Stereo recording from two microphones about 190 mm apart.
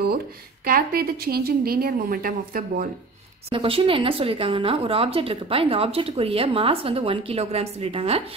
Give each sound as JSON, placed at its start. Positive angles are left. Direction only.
{"t": 0.7, "sound": "a woman's voice", "side_deg": -50}
{"t": 3.4, "sound": "speech", "side_deg": -30}